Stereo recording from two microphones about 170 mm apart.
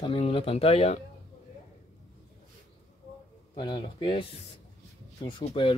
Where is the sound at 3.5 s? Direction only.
30° left (ahead or behind).